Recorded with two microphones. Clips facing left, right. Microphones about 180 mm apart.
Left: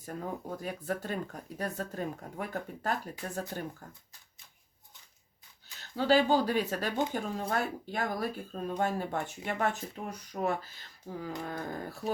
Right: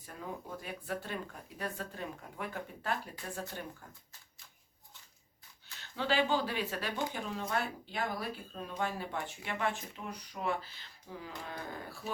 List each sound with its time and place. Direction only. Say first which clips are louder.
0.6 s speech: left 5 dB; 45° left (ahead or behind)
5.8 s speech: left 6 dB; 40° left (ahead or behind)